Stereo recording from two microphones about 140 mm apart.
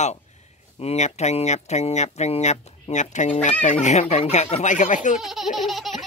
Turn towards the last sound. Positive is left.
turn(degrees=0)  # may be behind; listen again after turning